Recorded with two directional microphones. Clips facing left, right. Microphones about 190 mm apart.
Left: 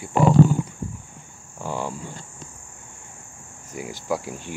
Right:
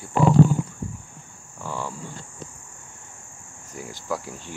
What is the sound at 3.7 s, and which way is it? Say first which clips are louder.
Cricket: left 3 dB; 10° left (ahead or behind).